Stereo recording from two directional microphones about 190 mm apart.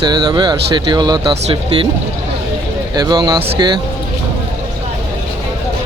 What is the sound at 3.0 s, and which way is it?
Speech, 20° right (ahead or behind).